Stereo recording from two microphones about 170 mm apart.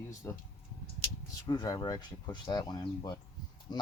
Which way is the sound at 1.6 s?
20° left (ahead or behind).